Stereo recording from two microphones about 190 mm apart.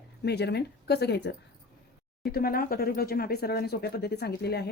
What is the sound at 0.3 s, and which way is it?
Speech, 60° left (ahead or behind).